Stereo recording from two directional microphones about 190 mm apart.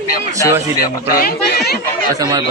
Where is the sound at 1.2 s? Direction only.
50° left (ahead or behind).